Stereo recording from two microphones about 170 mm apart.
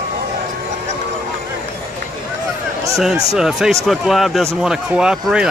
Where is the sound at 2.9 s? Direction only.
5° right (ahead or behind).